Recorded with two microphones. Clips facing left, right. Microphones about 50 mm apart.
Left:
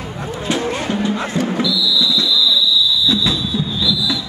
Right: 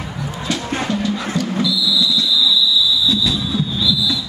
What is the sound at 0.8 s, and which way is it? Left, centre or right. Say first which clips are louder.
Music: left 1 dB; left.